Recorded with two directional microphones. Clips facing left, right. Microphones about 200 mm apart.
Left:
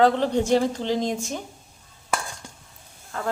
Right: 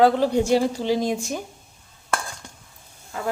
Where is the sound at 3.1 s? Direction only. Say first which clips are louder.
Right 1 dB; 10° right (ahead or behind).